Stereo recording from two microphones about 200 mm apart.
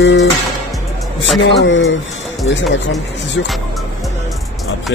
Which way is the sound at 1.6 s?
70° left (ahead or behind).